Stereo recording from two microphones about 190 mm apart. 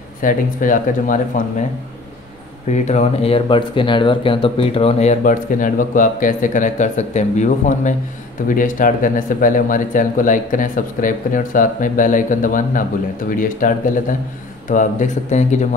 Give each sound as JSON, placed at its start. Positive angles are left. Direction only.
{"t": 0.2, "sound": "speech", "side_deg": 45}
{"t": 2.7, "sound": "speech", "side_deg": 35}